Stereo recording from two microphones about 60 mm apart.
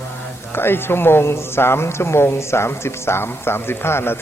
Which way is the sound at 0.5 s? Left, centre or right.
Left.